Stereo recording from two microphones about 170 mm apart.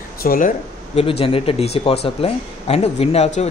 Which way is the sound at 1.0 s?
35° left (ahead or behind).